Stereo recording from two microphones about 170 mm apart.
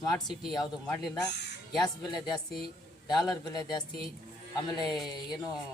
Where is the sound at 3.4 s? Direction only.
25° left (ahead or behind).